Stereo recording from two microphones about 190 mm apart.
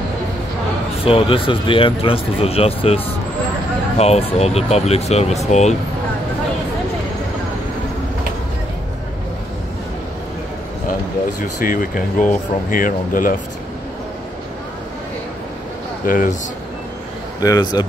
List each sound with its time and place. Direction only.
1.0 s speech: 30° left (ahead or behind)
4.0 s speech: 35° left (ahead or behind)
11.6 s speech: 45° left (ahead or behind)
16.1 s speech: 40° left (ahead or behind)
17.4 s speech: 20° left (ahead or behind)